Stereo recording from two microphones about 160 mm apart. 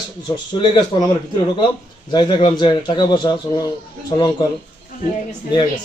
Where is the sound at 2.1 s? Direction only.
30° left (ahead or behind).